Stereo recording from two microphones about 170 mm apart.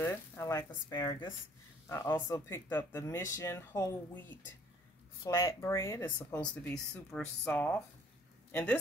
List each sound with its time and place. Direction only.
0.0 s speech: 15° left (ahead or behind)